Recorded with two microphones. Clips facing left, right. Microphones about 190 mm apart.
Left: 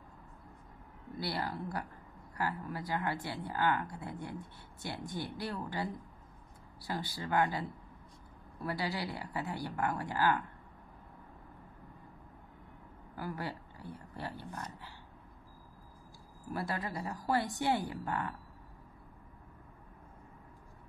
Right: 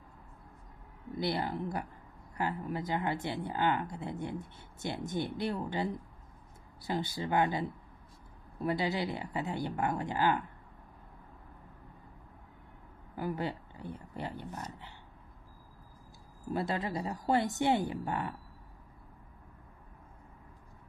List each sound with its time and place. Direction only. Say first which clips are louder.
1.1 s speech: right 4 dB; 20° right (ahead or behind)
13.1 s speech: right 5 dB; 20° right (ahead or behind)
16.4 s speech: right 4 dB; 25° right (ahead or behind)